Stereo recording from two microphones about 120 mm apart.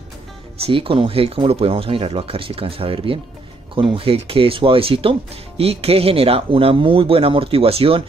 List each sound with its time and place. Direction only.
0.7 s speech: 45° right (ahead or behind)